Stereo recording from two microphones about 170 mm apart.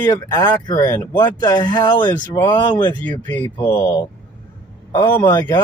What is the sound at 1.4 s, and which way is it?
Speech, 25° left (ahead or behind).